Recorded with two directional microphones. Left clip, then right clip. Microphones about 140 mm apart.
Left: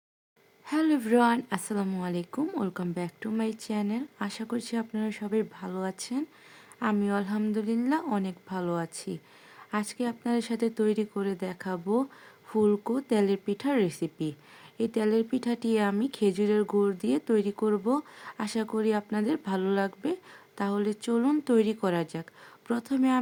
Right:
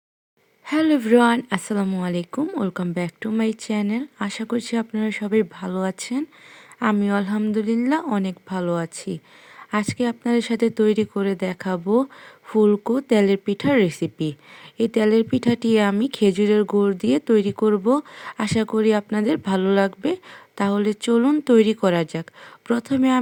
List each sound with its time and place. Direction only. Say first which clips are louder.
0.7 s speech: right 8 dB; 35° right (ahead or behind)